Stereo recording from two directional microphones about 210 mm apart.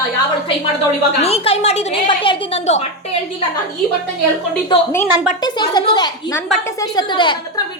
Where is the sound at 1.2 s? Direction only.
30° left (ahead or behind).